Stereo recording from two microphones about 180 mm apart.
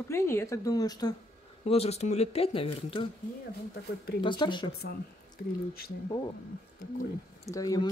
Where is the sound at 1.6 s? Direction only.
35° left (ahead or behind).